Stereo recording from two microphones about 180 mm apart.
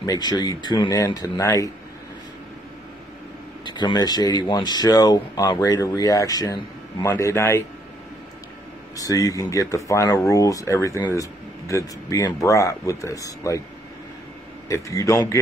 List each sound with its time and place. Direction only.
0.0 s speech: 20° left (ahead or behind)
3.7 s speech: 25° left (ahead or behind)
8.9 s speech: 20° left (ahead or behind)
14.7 s speech: 15° left (ahead or behind)